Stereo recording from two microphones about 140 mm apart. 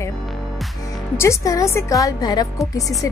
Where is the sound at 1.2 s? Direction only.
20° left (ahead or behind).